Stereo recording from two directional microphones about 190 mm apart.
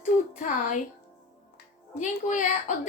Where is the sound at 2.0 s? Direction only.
40° left (ahead or behind).